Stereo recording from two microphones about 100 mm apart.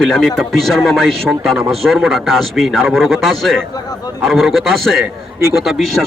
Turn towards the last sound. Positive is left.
turn(degrees=0)  # may be behind; listen again after turning